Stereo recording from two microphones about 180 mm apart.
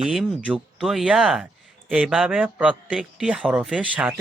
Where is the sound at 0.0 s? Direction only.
Centre (ahead or behind).